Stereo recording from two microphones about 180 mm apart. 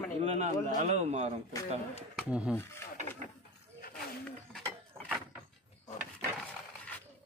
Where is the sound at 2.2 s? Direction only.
5° right (ahead or behind).